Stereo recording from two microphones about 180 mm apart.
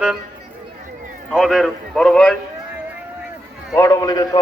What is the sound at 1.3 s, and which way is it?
A man's voice, centre (ahead or behind).